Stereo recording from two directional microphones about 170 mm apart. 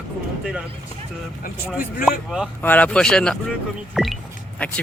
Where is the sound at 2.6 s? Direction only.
10° left (ahead or behind).